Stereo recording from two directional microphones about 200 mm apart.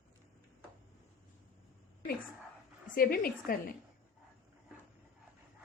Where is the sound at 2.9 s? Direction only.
45° left (ahead or behind).